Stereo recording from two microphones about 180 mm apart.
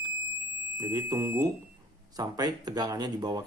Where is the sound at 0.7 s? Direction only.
20° right (ahead or behind).